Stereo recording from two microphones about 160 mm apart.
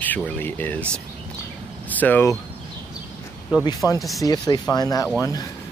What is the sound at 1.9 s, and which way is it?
Speech, 10° left (ahead or behind).